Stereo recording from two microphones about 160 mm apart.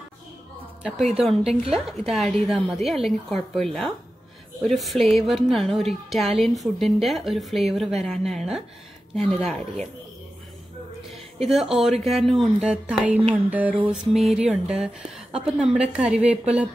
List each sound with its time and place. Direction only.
0.8 s a woman's voice: centre (ahead or behind)
11.4 s a woman's voice: centre (ahead or behind)
13.5 s a sound: 10° right (ahead or behind)
14.3 s a woman's voice: 5° right (ahead or behind)